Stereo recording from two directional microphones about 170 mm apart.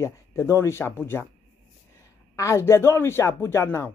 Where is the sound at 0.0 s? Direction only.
15° left (ahead or behind).